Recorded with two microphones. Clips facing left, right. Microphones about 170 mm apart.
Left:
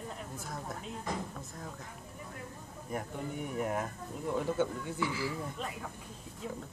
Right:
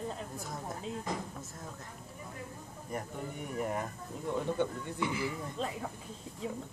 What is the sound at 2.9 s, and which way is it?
Speech, centre (ahead or behind).